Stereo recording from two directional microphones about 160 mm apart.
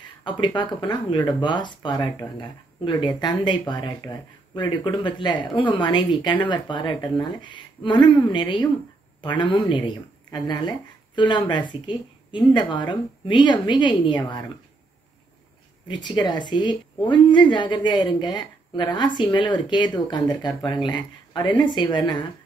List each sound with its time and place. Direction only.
0.2 s speech: 30° left (ahead or behind)
15.9 s speech: 25° left (ahead or behind)